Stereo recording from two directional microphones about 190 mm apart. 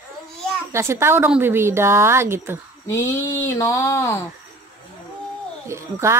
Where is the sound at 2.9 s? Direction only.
10° left (ahead or behind).